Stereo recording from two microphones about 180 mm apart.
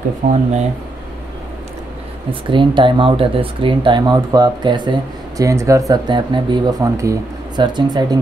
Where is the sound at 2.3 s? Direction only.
25° right (ahead or behind).